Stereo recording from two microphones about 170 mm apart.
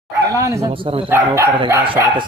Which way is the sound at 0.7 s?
30° right (ahead or behind).